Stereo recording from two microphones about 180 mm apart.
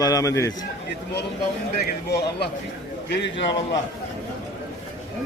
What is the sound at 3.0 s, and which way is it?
Speech, 75° left (ahead or behind).